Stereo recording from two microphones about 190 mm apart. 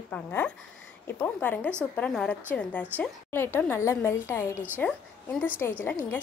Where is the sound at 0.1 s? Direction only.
10° left (ahead or behind).